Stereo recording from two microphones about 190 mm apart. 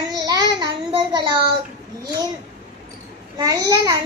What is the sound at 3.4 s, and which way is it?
Speech, 20° right (ahead or behind).